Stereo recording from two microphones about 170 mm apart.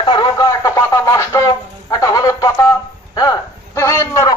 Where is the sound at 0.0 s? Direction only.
25° left (ahead or behind).